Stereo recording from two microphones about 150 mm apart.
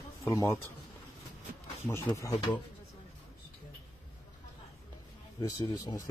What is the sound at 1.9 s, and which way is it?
Speech, 20° left (ahead or behind).